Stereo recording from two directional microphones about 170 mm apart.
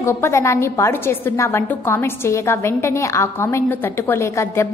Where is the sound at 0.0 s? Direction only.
15° left (ahead or behind).